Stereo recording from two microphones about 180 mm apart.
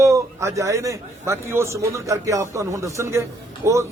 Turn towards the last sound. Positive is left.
turn(degrees=-15)  # may be behind; listen again after turning